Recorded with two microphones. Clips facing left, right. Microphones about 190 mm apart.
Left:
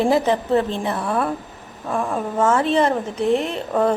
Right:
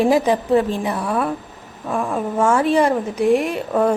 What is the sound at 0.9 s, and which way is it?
A woman's voice, centre (ahead or behind).